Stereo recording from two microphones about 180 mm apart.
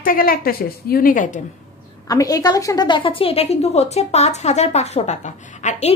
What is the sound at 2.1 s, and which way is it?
A woman's voice, 20° left (ahead or behind).